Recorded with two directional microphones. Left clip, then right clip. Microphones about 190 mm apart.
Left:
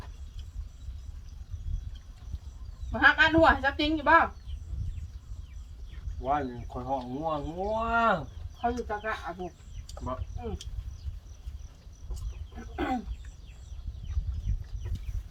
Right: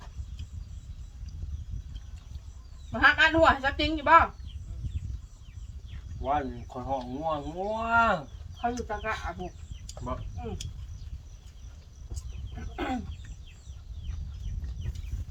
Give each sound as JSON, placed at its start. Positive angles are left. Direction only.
{"t": 2.9, "sound": "a sound", "side_deg": 10}
{"t": 3.5, "sound": "a woman's voice", "side_deg": 10}
{"t": 6.2, "sound": "speech", "side_deg": -15}
{"t": 8.6, "sound": "speech", "side_deg": 0}
{"t": 12.5, "sound": "chicken", "side_deg": 5}